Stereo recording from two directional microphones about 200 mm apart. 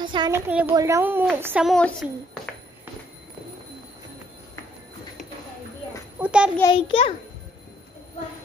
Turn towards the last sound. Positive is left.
turn(degrees=25)  # may be behind; listen again after turning